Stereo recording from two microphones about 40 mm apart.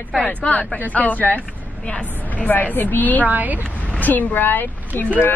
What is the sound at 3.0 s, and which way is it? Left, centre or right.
Speech, left.